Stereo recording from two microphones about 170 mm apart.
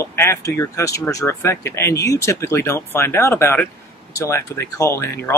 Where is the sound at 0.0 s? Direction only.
15° left (ahead or behind).